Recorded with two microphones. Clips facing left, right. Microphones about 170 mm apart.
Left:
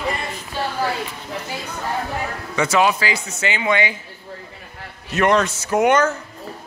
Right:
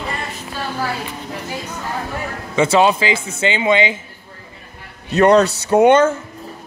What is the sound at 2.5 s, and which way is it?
A man's voice, 30° right (ahead or behind).